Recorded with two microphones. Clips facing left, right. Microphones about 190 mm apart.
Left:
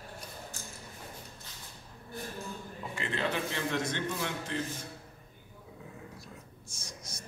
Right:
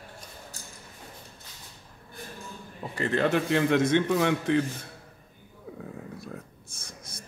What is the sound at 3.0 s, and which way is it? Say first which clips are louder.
A man's voice: right 9 dB; 45° right (ahead or behind).